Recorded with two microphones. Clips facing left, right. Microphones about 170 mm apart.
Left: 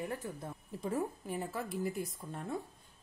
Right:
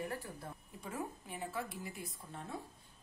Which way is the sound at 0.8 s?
40° left (ahead or behind).